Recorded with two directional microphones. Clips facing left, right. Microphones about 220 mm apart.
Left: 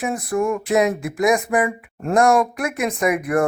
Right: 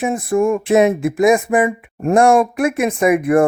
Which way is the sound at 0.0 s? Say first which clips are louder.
Right 5 dB; 25° right (ahead or behind).